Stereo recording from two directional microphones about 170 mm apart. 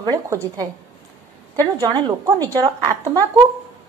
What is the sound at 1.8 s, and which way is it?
Speech, 25° right (ahead or behind).